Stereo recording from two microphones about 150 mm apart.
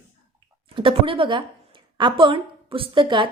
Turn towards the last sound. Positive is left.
turn(degrees=-35)  # may be behind; listen again after turning